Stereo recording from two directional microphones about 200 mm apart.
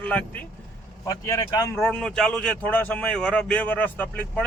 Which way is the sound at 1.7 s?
5° left (ahead or behind).